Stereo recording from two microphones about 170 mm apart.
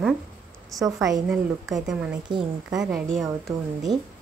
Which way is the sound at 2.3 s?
25° right (ahead or behind).